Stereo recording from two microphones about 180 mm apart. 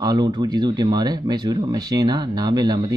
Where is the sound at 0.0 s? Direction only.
20° right (ahead or behind).